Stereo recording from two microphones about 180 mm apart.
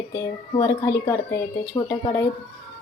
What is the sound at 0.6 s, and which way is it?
Speech, 15° left (ahead or behind).